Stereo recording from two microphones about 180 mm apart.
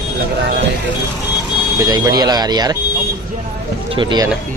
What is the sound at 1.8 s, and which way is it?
Speech, 20° right (ahead or behind).